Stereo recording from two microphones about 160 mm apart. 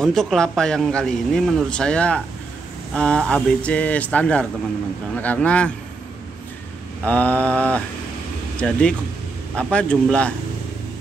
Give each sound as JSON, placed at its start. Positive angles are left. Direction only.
{"t": 0.0, "sound": "speech", "side_deg": 0}
{"t": 7.1, "sound": "speech", "side_deg": 10}